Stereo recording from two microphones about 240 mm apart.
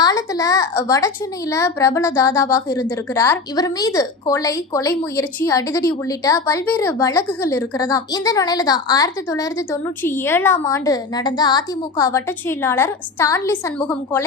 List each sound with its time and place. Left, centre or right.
0.0 s a woman's voice: centre